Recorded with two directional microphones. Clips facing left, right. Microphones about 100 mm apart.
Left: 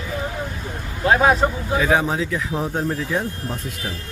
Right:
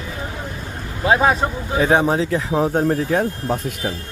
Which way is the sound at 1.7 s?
35° right (ahead or behind).